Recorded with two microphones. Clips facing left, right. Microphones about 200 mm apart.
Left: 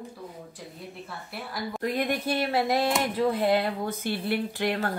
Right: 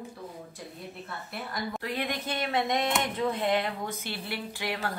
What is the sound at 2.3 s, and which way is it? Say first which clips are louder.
Speech: left 2 dB; 30° left (ahead or behind).